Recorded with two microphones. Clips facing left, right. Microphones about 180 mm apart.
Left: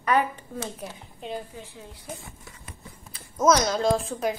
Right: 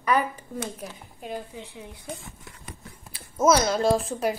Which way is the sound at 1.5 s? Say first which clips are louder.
Right 2 dB; 20° right (ahead or behind).